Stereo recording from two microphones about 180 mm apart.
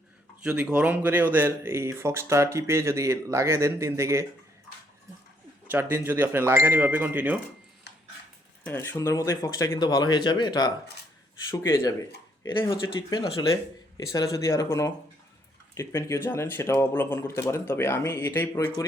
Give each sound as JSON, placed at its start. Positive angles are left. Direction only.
{"t": 0.4, "sound": "speech", "side_deg": -5}
{"t": 5.6, "sound": "speech", "side_deg": -10}
{"t": 8.6, "sound": "speech", "side_deg": 10}